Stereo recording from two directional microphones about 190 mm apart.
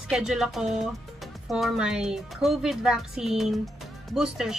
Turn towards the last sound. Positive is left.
turn(degrees=-5)  # may be behind; listen again after turning